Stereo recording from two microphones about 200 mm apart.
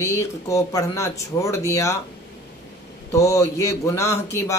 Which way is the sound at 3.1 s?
15° left (ahead or behind).